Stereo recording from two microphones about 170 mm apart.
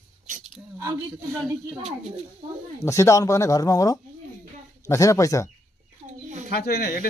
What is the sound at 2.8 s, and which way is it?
Speech, 15° left (ahead or behind).